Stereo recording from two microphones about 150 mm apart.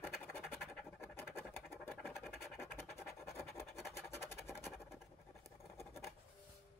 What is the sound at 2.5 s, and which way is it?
Scratch, 15° left (ahead or behind).